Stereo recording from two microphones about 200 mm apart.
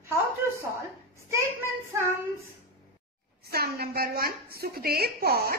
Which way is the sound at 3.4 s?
50° right (ahead or behind).